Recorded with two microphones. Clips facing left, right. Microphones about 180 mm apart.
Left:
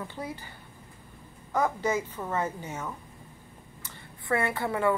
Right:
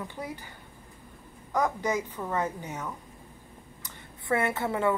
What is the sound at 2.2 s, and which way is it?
Speech, 5° left (ahead or behind).